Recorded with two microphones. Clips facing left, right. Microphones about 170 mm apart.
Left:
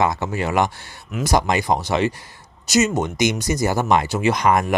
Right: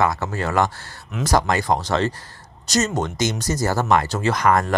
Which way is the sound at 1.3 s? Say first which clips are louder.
Even; 15° left (ahead or behind).